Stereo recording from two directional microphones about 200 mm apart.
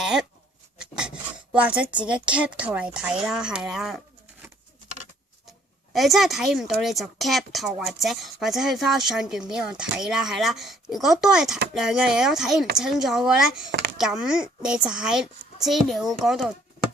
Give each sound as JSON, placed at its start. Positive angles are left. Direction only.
{"t": 0.0, "sound": "a sound", "side_deg": 0}
{"t": 0.8, "sound": "filing", "side_deg": -5}
{"t": 1.5, "sound": "a woman's voice", "side_deg": -5}
{"t": 5.9, "sound": "a woman's voice", "side_deg": 0}
{"t": 13.7, "sound": "speech", "side_deg": -60}
{"t": 14.0, "sound": "a woman's voice", "side_deg": -5}